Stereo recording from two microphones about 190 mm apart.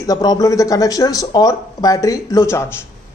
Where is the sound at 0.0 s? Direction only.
20° left (ahead or behind).